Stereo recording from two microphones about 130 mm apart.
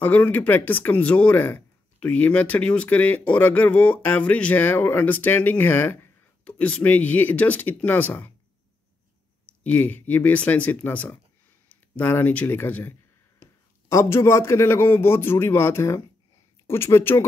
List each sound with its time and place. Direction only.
0.0 s speech: 15° left (ahead or behind)
9.6 s a man's voice: 10° left (ahead or behind)